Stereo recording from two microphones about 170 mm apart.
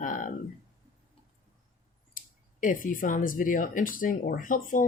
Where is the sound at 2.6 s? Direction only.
50° left (ahead or behind).